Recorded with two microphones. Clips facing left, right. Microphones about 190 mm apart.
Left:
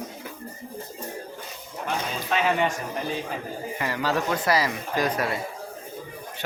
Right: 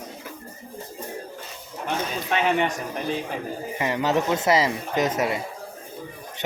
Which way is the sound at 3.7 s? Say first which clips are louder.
Right 4 dB; 20° right (ahead or behind).